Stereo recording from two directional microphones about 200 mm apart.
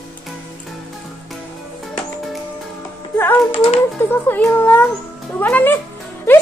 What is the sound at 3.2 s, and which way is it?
Speech, 10° left (ahead or behind).